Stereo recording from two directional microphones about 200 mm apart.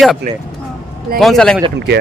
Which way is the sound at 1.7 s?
55° right (ahead or behind).